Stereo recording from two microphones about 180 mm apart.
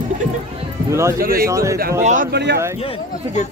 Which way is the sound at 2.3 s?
70° right (ahead or behind).